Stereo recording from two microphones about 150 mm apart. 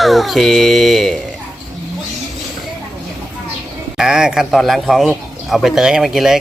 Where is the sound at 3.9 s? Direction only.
5° right (ahead or behind).